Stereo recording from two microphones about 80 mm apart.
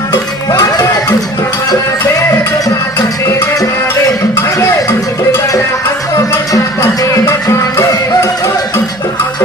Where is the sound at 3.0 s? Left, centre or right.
Left.